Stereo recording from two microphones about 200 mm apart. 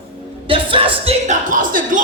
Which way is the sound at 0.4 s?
25° right (ahead or behind).